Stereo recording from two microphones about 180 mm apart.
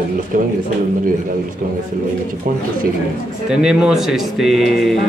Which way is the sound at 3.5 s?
5° right (ahead or behind).